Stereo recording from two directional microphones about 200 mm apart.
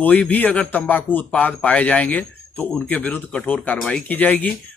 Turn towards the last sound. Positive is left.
turn(degrees=5)  # may be behind; listen again after turning